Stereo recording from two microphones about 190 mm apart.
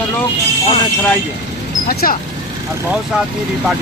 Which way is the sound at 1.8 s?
50° left (ahead or behind).